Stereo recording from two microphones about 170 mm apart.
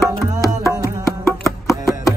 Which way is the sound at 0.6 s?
15° left (ahead or behind).